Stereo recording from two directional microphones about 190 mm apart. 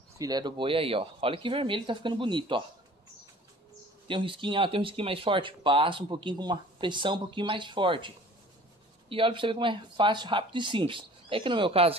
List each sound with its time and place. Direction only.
0.2 s speech: 20° right (ahead or behind)
4.1 s speech: 25° right (ahead or behind)
9.1 s speech: 25° right (ahead or behind)